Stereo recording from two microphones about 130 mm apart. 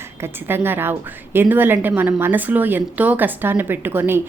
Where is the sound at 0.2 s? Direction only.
15° right (ahead or behind).